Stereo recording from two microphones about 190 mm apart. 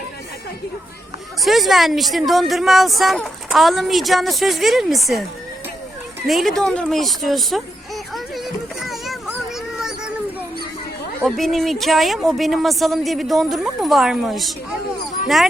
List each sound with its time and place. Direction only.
1.4 s speech: centre (ahead or behind)
6.2 s speech: centre (ahead or behind)
6.6 s a sound: 5° left (ahead or behind)
11.3 s speech: centre (ahead or behind)